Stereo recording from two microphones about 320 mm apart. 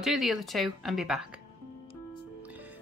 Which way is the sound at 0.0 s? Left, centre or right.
Centre.